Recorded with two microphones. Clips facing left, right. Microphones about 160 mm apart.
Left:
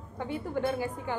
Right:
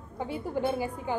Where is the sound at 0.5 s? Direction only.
15° right (ahead or behind).